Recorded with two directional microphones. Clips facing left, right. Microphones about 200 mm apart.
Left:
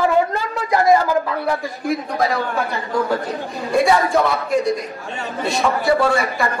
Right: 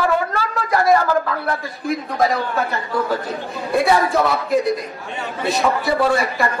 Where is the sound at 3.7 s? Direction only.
Centre (ahead or behind).